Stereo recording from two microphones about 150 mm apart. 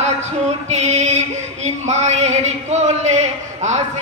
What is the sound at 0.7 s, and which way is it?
Female singing, 50° right (ahead or behind).